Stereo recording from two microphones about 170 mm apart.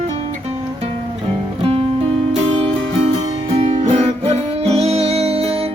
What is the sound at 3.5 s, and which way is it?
Music, 40° right (ahead or behind).